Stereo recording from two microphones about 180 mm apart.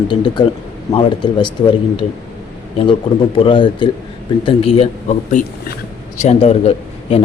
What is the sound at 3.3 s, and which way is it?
A man's voice, 30° left (ahead or behind).